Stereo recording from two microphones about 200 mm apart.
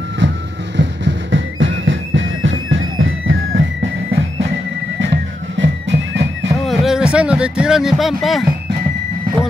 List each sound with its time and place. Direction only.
0.2 s vehicle: 65° right (ahead or behind)
0.7 s music: 65° right (ahead or behind)
5.0 s music: 60° right (ahead or behind)
6.6 s music: centre (ahead or behind)